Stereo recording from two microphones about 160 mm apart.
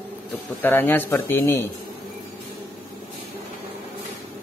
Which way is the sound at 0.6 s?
15° left (ahead or behind).